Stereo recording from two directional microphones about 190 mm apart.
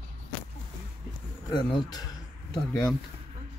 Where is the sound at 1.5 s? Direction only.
20° left (ahead or behind).